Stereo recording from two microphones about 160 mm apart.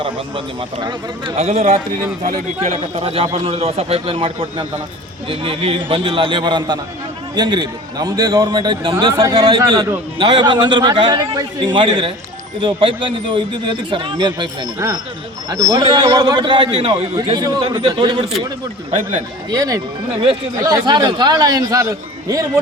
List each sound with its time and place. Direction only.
0.0 s a man's voice: 30° right (ahead or behind)
1.4 s a man's voice: 40° right (ahead or behind)
19.5 s a man's voice: 25° right (ahead or behind)